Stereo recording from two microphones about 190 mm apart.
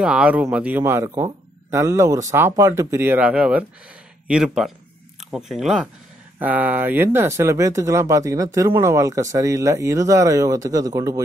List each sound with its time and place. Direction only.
0.0 s speech: 5° right (ahead or behind)